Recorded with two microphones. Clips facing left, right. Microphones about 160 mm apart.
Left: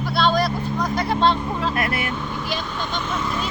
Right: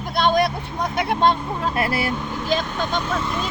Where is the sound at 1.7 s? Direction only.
30° right (ahead or behind).